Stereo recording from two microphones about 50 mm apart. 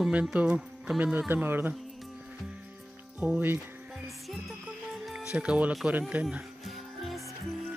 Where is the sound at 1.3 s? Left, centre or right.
Right.